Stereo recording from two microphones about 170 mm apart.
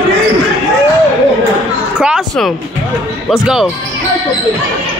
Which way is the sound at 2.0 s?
5° right (ahead or behind).